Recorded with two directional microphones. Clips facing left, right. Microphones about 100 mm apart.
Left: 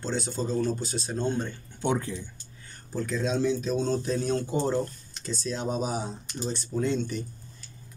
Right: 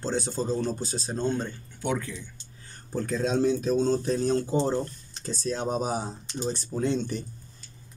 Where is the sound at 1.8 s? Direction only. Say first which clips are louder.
Left 2 dB; 30° left (ahead or behind).